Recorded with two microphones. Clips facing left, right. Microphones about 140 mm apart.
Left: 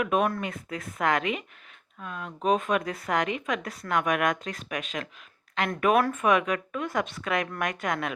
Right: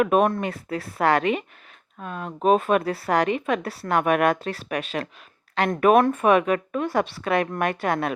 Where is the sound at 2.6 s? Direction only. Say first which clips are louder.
Right 6 dB; 35° right (ahead or behind).